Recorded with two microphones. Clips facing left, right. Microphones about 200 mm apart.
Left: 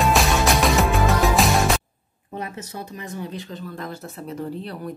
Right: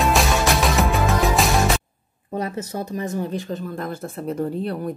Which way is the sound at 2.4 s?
45° right (ahead or behind).